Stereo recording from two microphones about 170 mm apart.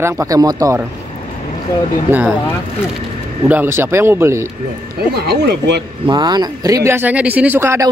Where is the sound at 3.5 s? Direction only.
15° right (ahead or behind).